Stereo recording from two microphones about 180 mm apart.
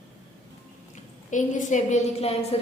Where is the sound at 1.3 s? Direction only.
45° left (ahead or behind).